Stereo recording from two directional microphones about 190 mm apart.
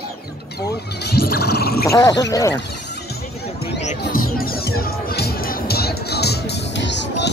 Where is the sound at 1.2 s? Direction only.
55° left (ahead or behind).